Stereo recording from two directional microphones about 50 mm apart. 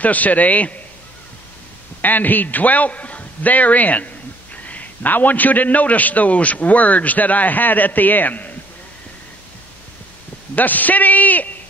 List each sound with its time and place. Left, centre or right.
0.0 s a man's voice: left
2.0 s a man's voice: left
10.5 s a man's voice: left